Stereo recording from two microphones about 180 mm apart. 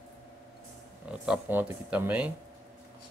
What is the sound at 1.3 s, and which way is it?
Speech, 10° right (ahead or behind).